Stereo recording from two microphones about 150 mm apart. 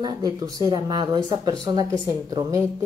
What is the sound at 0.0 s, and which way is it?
A woman's voice, 25° right (ahead or behind).